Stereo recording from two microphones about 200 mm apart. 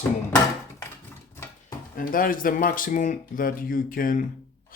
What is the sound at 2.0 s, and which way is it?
Speech, 45° left (ahead or behind).